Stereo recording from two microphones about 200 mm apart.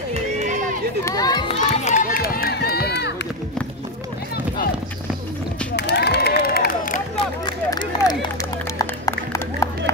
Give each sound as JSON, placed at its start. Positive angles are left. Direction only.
{"t": 0.1, "sound": "run", "side_deg": -35}
{"t": 1.0, "sound": "children playing", "side_deg": 20}
{"t": 1.5, "sound": "run", "side_deg": 35}
{"t": 5.8, "sound": "a sound", "side_deg": 55}
{"t": 7.4, "sound": "a sound", "side_deg": 20}
{"t": 8.7, "sound": "music", "side_deg": 15}